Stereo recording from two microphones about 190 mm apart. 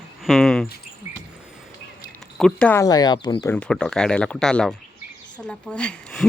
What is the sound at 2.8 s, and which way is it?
Speech, 20° left (ahead or behind).